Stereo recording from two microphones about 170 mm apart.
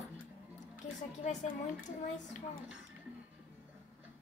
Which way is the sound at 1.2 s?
45° left (ahead or behind).